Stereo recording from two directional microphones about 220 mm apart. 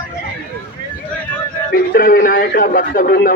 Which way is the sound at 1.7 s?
40° left (ahead or behind).